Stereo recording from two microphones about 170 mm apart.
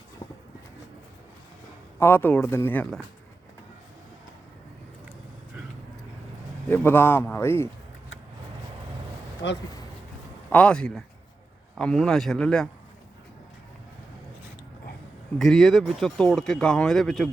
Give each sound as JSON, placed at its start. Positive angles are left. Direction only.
{"t": 2.0, "sound": "a man's voice", "side_deg": 15}
{"t": 6.7, "sound": "a man's voice", "side_deg": 10}
{"t": 9.4, "sound": "speech", "side_deg": 90}
{"t": 10.5, "sound": "speech", "side_deg": 5}
{"t": 15.4, "sound": "speech", "side_deg": 0}